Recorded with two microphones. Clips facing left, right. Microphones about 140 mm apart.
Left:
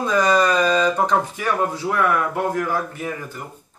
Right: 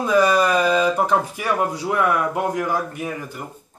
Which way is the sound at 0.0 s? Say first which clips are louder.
Right 1 dB; 10° right (ahead or behind).